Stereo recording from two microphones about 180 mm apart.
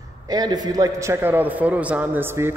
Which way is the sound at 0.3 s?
20° right (ahead or behind).